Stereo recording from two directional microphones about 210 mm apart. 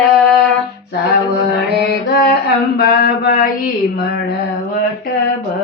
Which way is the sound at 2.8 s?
45° left (ahead or behind).